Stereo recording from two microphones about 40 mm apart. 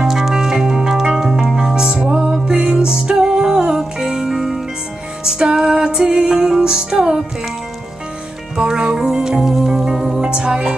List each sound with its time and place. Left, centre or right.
0.0 s music: centre
8.5 s music: centre
10.2 s music: right